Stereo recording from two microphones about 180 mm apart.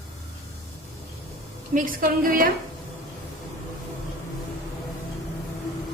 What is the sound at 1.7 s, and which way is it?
Speech, 50° right (ahead or behind).